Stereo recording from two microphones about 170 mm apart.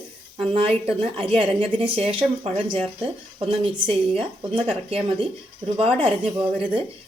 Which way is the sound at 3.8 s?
30° right (ahead or behind).